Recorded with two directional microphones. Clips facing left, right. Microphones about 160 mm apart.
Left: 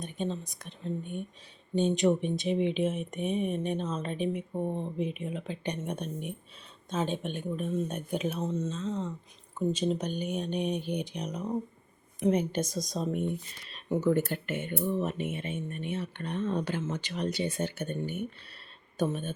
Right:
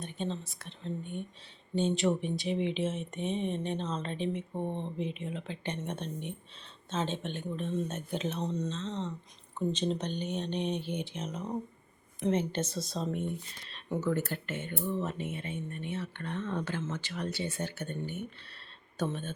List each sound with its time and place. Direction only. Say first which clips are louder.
0.0 s speech: left 2 dB; 15° left (ahead or behind)